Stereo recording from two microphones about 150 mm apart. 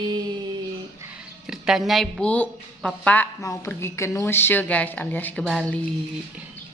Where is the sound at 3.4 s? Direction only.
20° left (ahead or behind).